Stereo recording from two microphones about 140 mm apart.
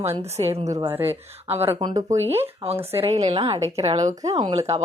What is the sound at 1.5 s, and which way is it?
Speech, 15° right (ahead or behind).